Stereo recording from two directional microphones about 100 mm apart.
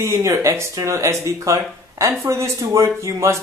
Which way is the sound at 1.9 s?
35° right (ahead or behind).